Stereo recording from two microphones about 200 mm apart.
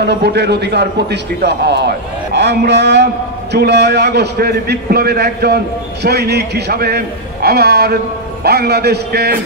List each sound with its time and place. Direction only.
0.0 s a man's voice: 55° right (ahead or behind)